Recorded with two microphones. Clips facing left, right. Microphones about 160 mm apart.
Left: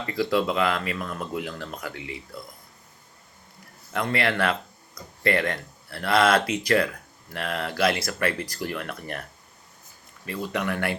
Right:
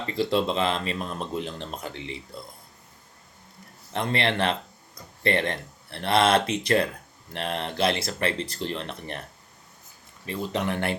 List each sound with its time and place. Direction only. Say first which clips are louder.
0.0 s speech: even; 25° right (ahead or behind)
3.9 s speech: left 1 dB; 25° right (ahead or behind)
10.2 s speech: even; 20° right (ahead or behind)